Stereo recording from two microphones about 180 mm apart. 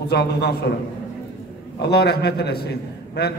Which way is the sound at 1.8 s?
65° left (ahead or behind).